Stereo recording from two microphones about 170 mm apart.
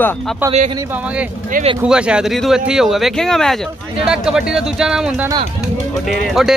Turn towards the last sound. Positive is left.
turn(degrees=0)  # may be behind; listen again after turning